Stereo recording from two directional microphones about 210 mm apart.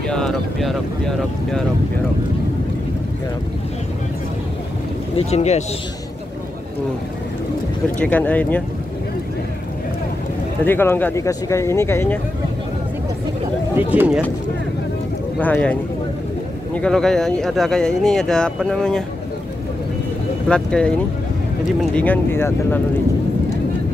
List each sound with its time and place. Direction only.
0.1 s speech: centre (ahead or behind)
5.1 s speech: 30° left (ahead or behind)
8.0 s speech: 5° left (ahead or behind)
10.6 s speech: 10° left (ahead or behind)
13.7 s speech: 10° right (ahead or behind)
15.3 s speech: 5° left (ahead or behind)
20.4 s speech: 5° left (ahead or behind)
21.9 s speech: 10° left (ahead or behind)